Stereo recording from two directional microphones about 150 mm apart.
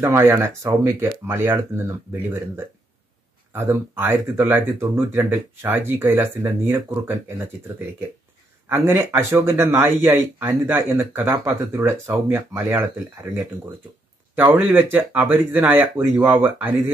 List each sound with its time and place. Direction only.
0.0 s a man's voice: 15° right (ahead or behind)
8.6 s a man's voice: 15° right (ahead or behind)